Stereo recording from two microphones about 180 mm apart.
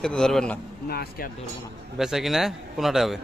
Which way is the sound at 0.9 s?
60° left (ahead or behind).